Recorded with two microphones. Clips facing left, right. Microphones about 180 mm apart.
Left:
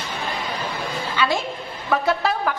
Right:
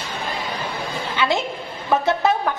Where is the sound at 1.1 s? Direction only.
20° right (ahead or behind).